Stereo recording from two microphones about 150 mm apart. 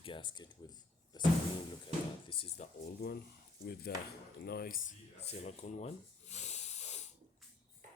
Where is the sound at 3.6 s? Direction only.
90° left; by 4.9 s 65° left (ahead or behind).